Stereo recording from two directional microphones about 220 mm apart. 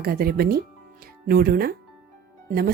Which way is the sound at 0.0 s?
45° right (ahead or behind).